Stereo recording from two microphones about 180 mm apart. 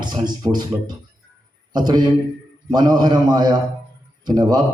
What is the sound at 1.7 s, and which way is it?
A man's voice, 25° right (ahead or behind).